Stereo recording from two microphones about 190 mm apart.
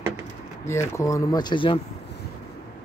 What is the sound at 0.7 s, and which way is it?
Speech, 15° left (ahead or behind).